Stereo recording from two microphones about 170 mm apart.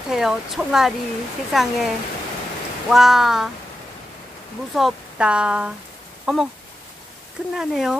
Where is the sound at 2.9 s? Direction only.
Centre (ahead or behind).